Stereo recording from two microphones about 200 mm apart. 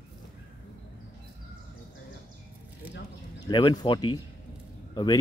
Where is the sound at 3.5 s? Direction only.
20° left (ahead or behind).